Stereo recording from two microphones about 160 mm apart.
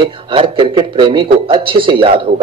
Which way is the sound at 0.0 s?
30° right (ahead or behind).